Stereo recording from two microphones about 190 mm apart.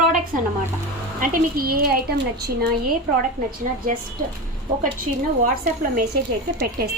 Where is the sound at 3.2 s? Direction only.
45° right (ahead or behind).